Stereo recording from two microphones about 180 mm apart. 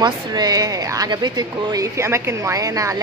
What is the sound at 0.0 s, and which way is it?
Speech, 20° right (ahead or behind).